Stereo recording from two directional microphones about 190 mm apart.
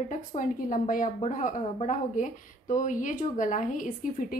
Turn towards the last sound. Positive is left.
turn(degrees=45)  # may be behind; listen again after turning